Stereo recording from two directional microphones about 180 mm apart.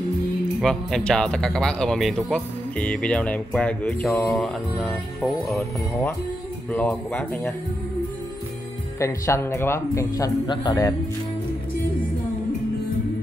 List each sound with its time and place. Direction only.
0.6 s speech: centre (ahead or behind)
9.0 s speech: 15° left (ahead or behind)